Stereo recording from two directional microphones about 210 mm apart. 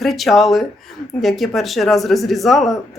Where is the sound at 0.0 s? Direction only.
Centre (ahead or behind).